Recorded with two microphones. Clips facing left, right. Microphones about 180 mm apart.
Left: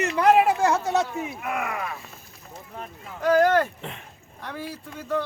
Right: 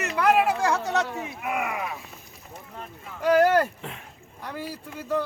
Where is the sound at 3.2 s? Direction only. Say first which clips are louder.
Even; 10° right (ahead or behind).